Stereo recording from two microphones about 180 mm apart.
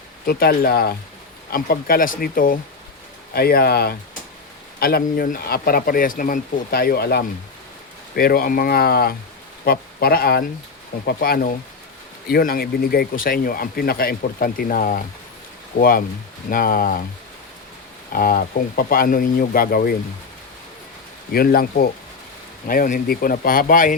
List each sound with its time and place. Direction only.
0.3 s speech: 55° left (ahead or behind)
18.1 s speech: 55° left (ahead or behind)
21.3 s speech: 55° left (ahead or behind)